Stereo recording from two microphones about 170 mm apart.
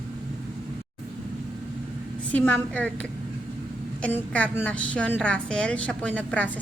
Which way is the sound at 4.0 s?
10° left (ahead or behind).